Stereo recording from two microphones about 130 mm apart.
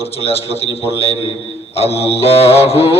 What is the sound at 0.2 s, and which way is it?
A man's voice, 50° left (ahead or behind).